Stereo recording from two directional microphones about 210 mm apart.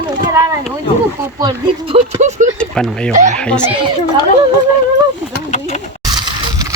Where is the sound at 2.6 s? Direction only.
5° left (ahead or behind).